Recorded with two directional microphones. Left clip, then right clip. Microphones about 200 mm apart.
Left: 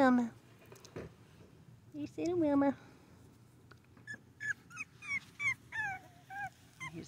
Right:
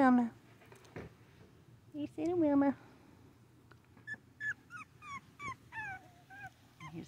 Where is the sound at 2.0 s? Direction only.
5° right (ahead or behind).